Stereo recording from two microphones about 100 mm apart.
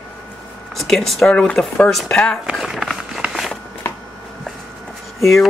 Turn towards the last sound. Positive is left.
turn(degrees=0)  # may be behind; listen again after turning